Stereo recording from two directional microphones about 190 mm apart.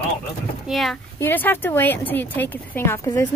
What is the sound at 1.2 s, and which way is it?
Speech, 10° left (ahead or behind).